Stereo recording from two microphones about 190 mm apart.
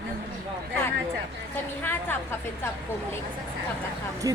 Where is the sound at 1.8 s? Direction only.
10° left (ahead or behind).